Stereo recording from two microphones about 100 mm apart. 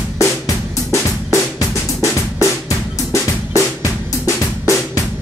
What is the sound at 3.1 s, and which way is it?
Drum, 30° left (ahead or behind).